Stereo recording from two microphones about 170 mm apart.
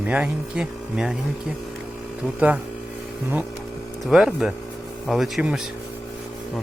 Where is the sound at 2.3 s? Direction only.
10° right (ahead or behind).